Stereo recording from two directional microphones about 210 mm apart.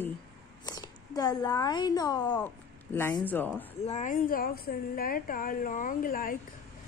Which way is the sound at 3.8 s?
35° left (ahead or behind).